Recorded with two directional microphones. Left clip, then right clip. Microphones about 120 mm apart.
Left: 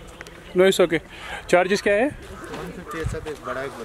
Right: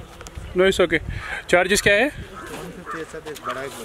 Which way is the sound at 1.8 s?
35° right (ahead or behind).